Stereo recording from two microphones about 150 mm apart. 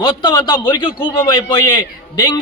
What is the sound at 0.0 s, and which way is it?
A man's voice, 30° left (ahead or behind).